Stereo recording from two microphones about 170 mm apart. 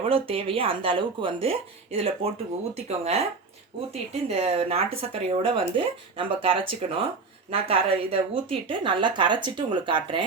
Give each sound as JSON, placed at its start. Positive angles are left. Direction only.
{"t": 0.1, "sound": "a woman's voice", "side_deg": -35}